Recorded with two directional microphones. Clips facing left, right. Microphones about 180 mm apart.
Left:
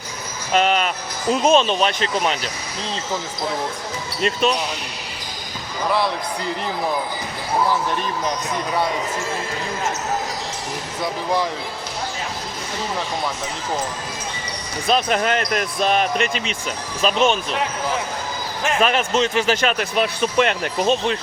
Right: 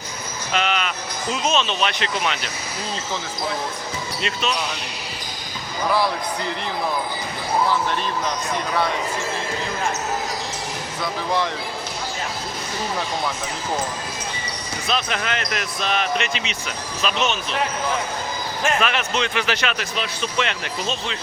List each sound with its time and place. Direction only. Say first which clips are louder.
0.5 s speech: left 5 dB; 45° left (ahead or behind)
4.2 s speech: left 7 dB; 45° left (ahead or behind)
14.8 s speech: left 6 dB; 45° left (ahead or behind)
18.8 s speech: left 4 dB; 40° left (ahead or behind)